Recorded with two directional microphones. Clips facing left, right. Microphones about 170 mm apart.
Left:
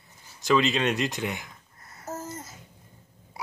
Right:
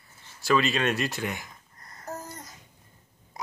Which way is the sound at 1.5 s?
5° left (ahead or behind).